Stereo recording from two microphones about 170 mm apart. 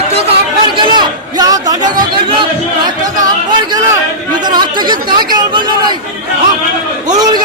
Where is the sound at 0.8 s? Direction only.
25° right (ahead or behind).